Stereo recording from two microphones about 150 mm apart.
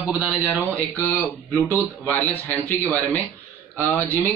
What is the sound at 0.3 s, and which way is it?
Speech, 10° right (ahead or behind).